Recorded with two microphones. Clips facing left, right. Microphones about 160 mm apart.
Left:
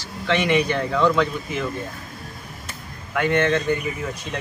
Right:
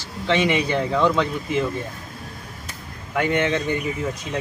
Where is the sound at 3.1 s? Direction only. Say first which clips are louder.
Left 1 dB; 15° right (ahead or behind).